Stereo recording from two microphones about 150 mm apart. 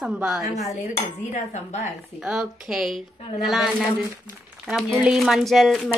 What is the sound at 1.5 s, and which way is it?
Speech, 50° left (ahead or behind).